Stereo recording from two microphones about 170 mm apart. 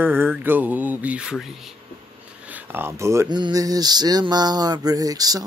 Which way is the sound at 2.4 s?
10° right (ahead or behind).